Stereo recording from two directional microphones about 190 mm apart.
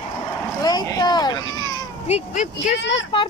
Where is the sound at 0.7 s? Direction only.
20° left (ahead or behind).